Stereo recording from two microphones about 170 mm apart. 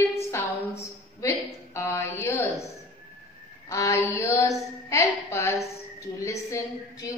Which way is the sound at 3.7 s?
20° left (ahead or behind).